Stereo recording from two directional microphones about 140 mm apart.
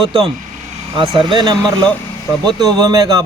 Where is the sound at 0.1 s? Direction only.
35° right (ahead or behind).